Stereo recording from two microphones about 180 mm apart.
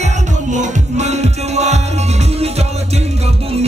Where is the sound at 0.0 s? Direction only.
40° right (ahead or behind).